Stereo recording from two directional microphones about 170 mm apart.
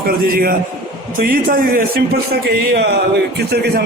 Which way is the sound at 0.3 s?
60° right (ahead or behind).